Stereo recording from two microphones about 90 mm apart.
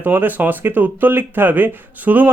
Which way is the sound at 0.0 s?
20° right (ahead or behind).